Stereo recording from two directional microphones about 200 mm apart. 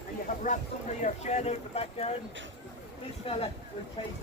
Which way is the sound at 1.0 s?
35° left (ahead or behind).